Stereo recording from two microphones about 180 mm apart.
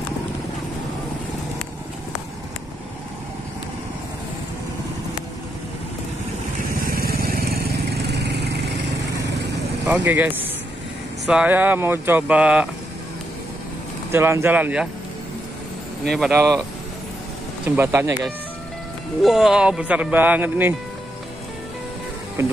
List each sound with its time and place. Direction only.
6.9 s vehicle: 55° right (ahead or behind); by 9.6 s 70° right (ahead or behind)
9.8 s speech: 10° right (ahead or behind)
14.1 s speech: 10° right (ahead or behind)
16.1 s speech: centre (ahead or behind)
17.6 s speech: 15° right (ahead or behind)
19.2 s speech: centre (ahead or behind)